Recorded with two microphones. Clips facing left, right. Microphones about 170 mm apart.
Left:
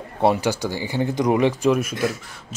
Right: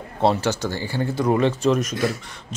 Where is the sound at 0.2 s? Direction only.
15° left (ahead or behind).